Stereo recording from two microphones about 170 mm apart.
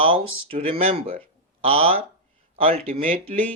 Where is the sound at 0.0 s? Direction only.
35° right (ahead or behind).